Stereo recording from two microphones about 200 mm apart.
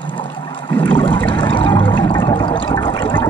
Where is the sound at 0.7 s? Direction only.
10° left (ahead or behind).